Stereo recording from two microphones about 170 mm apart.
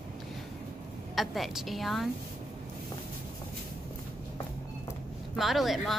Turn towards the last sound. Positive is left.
turn(degrees=0)  # may be behind; listen again after turning